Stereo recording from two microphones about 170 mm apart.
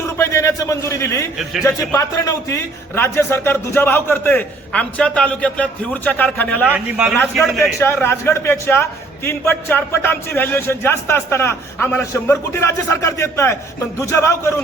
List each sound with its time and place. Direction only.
0.2 s a man's voice: 15° left (ahead or behind)
6.7 s a man's voice: 10° right (ahead or behind)
7.8 s a man's voice: 15° left (ahead or behind)